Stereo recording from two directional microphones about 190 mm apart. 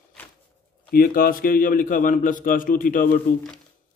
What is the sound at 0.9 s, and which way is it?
A man's voice, 50° left (ahead or behind).